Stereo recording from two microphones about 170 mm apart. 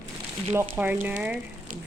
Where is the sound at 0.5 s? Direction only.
15° right (ahead or behind).